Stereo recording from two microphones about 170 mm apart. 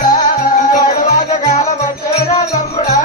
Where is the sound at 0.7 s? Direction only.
50° left (ahead or behind).